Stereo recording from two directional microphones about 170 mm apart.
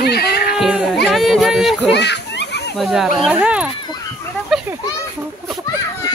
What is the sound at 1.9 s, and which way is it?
Children playing, 90° left.